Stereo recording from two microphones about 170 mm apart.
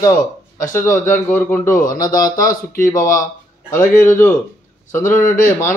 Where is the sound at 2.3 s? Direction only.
55° left (ahead or behind).